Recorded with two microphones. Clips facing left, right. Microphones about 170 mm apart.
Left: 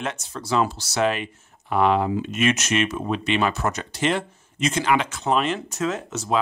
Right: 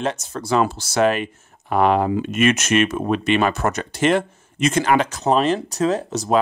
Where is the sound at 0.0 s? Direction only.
40° right (ahead or behind).